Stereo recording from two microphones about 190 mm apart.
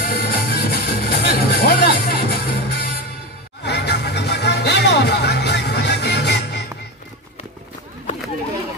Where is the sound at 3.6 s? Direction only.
60° left (ahead or behind).